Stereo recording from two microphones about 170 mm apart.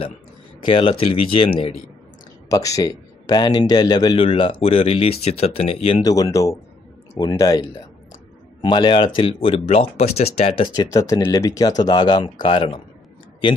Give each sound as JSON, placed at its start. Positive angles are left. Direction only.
{"t": 0.7, "sound": "speech", "side_deg": 35}
{"t": 2.5, "sound": "speech", "side_deg": 20}
{"t": 6.0, "sound": "speech", "side_deg": 20}
{"t": 8.6, "sound": "speech", "side_deg": 25}
{"t": 10.7, "sound": "speech", "side_deg": 20}